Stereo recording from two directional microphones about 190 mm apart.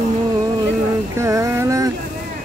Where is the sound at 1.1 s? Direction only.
15° right (ahead or behind).